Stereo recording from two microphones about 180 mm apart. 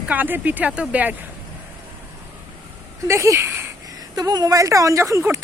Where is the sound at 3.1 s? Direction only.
15° right (ahead or behind).